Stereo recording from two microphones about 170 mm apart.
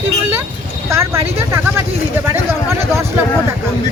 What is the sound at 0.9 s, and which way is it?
Speech, 15° right (ahead or behind).